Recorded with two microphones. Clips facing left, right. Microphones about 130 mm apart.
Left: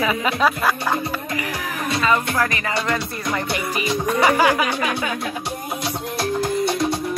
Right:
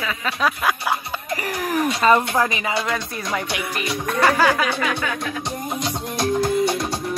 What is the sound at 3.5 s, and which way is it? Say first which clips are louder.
Music: left 3 dB; 5° left (ahead or behind).